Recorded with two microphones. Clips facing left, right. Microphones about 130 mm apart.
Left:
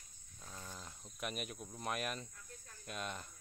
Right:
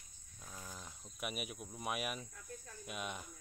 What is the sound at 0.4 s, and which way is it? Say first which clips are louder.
Cricket: even; 5° right (ahead or behind).